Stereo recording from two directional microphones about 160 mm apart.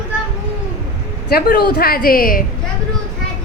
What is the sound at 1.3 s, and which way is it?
A woman's voice, 70° left (ahead or behind).